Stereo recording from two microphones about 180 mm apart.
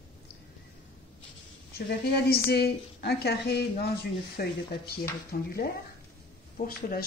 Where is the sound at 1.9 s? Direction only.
65° left (ahead or behind).